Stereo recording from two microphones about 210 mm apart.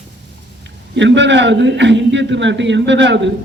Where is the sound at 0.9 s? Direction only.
55° right (ahead or behind).